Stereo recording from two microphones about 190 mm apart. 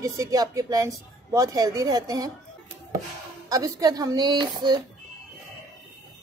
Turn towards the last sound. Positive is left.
turn(degrees=-20)  # may be behind; listen again after turning